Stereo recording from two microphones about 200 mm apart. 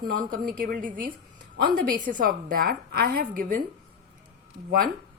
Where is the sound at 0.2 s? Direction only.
45° right (ahead or behind).